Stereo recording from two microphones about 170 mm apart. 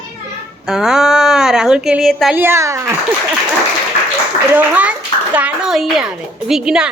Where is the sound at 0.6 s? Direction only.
5° right (ahead or behind).